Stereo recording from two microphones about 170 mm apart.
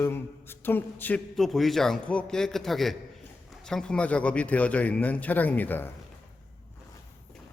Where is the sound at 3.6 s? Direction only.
5° left (ahead or behind).